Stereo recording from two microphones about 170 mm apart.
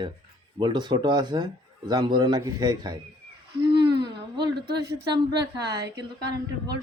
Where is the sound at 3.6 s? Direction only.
25° right (ahead or behind).